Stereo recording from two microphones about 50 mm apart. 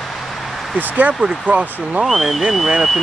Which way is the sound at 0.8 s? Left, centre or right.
Right.